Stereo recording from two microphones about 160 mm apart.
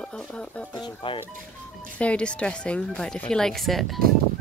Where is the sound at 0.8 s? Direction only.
30° left (ahead or behind).